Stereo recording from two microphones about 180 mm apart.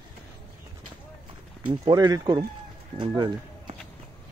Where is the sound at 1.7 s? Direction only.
25° right (ahead or behind).